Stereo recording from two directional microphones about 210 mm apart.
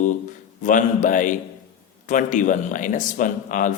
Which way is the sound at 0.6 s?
40° left (ahead or behind).